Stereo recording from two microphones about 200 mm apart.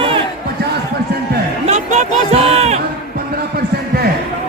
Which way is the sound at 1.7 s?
35° right (ahead or behind).